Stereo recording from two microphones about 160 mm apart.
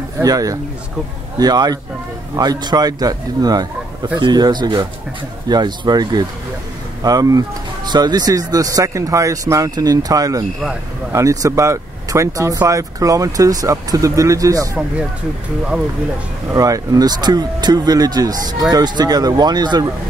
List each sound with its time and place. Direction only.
0.2 s speech: 20° right (ahead or behind)
16.5 s speech: 20° right (ahead or behind)